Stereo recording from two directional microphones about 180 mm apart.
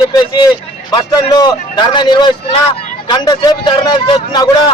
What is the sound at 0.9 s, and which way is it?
Speech, 25° left (ahead or behind).